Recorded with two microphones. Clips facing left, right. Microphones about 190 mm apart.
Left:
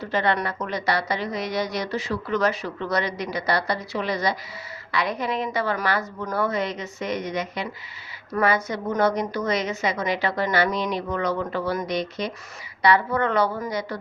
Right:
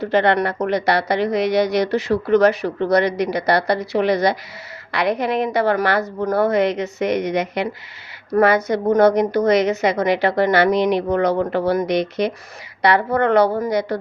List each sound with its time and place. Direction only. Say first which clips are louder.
0.0 s speech: right 7 dB; 70° right (ahead or behind)